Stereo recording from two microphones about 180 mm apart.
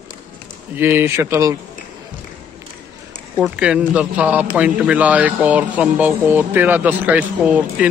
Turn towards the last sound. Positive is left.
turn(degrees=-10)  # may be behind; listen again after turning